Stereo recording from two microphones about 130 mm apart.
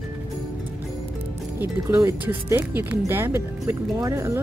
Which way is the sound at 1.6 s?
20° right (ahead or behind).